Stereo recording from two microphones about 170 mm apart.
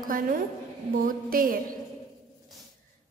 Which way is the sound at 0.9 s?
55° right (ahead or behind).